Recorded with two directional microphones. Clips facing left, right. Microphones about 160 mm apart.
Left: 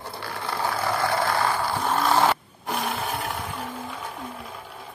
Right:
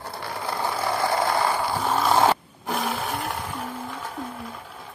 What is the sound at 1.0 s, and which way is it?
Ratchet, 20° right (ahead or behind).